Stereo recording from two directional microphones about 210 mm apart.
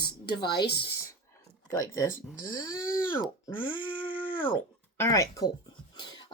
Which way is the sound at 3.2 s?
15° left (ahead or behind).